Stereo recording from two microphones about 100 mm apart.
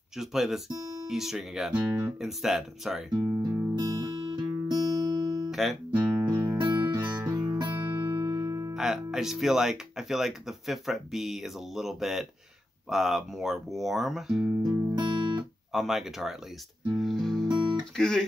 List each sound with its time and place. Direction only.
0.2 s speech: 5° right (ahead or behind)
2.1 s speech: 5° right (ahead or behind)
3.3 s music: 25° right (ahead or behind)
3.7 s music: 40° right (ahead or behind)
5.5 s guitar: centre (ahead or behind)
6.2 s music: 35° right (ahead or behind)
7.0 s music: 20° right (ahead or behind)
7.2 s music: 40° right (ahead or behind)
8.7 s speech: 5° right (ahead or behind)
14.7 s music: 30° right (ahead or behind)
15.0 s music: 50° right (ahead or behind)
15.7 s speech: 5° right (ahead or behind)
16.9 s music: centre (ahead or behind)
17.9 s speech: 5° left (ahead or behind)